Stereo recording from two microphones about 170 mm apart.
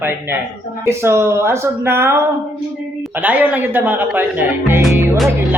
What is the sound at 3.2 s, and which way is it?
Speech, 10° right (ahead or behind).